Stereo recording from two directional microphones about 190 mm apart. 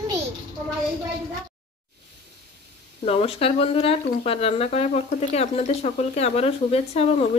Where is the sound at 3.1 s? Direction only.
30° left (ahead or behind).